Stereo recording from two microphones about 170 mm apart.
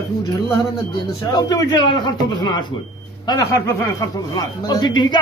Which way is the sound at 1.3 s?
20° left (ahead or behind).